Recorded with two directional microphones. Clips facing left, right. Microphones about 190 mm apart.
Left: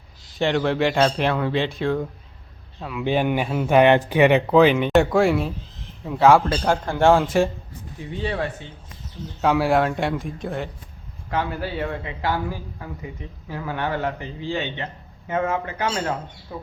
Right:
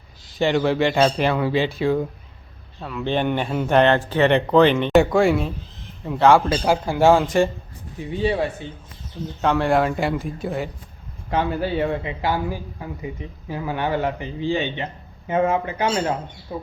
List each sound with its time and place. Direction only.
0.3 s speech: centre (ahead or behind)
2.8 s a man's voice: 10° left (ahead or behind)
8.2 s a man's voice: 10° right (ahead or behind)
9.4 s speech: 5° left (ahead or behind)
11.3 s a man's voice: 20° right (ahead or behind)